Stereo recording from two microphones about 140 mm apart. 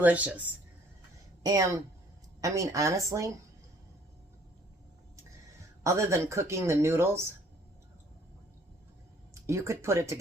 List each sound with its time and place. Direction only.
0.0 s speech: 10° right (ahead or behind)
1.5 s speech: 25° right (ahead or behind)
5.8 s speech: 20° right (ahead or behind)
9.3 s speech: 20° right (ahead or behind)